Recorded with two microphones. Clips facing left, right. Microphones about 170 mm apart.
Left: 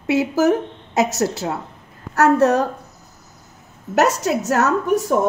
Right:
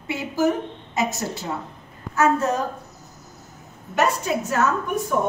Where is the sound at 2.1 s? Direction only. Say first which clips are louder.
Left 6 dB; 70° left (ahead or behind).